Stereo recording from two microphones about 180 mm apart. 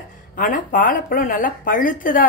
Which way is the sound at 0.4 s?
50° left (ahead or behind).